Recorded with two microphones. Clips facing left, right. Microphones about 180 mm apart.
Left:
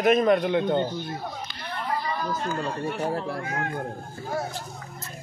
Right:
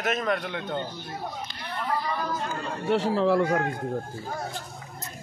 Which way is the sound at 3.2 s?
75° right (ahead or behind).